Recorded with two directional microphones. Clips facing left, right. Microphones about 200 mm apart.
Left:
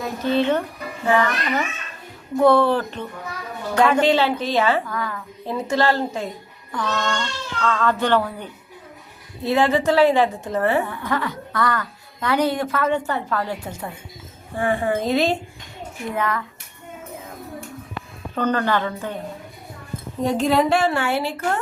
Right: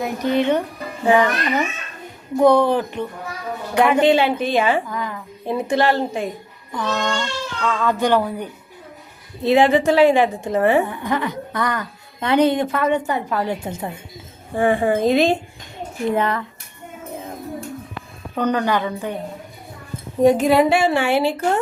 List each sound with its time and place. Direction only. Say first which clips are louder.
0.0 s a woman's voice: right 1 dB; 15° right (ahead or behind)
16.0 s speech: right 5 dB; 30° right (ahead or behind)
18.3 s a woman's voice: right 1 dB; 15° right (ahead or behind)
20.2 s a woman's voice: right 5 dB; 5° right (ahead or behind)